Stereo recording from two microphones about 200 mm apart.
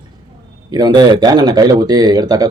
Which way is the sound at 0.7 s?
20° right (ahead or behind).